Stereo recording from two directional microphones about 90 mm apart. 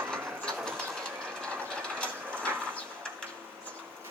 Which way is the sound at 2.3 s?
20° right (ahead or behind).